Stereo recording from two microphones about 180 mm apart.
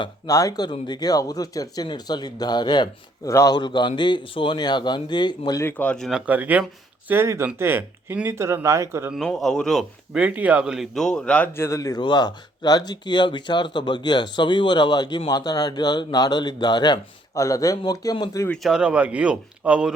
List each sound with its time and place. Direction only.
0.0 s a man's voice: 20° left (ahead or behind); by 9.1 s 15° right (ahead or behind)
9.1 s a man's voice: centre (ahead or behind); by 18.4 s 20° left (ahead or behind)
18.4 s speech: centre (ahead or behind)